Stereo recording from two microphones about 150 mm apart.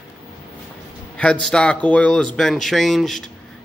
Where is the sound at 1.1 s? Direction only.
5° left (ahead or behind).